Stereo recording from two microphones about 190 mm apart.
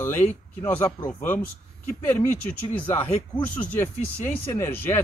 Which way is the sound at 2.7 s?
10° left (ahead or behind).